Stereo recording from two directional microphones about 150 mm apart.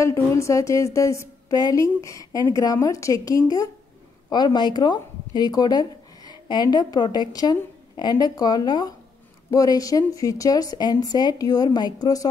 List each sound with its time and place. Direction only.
0.0 s a woman's voice: 20° left (ahead or behind)